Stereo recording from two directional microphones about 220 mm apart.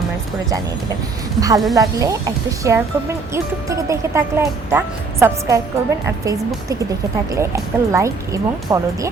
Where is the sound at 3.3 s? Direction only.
15° right (ahead or behind).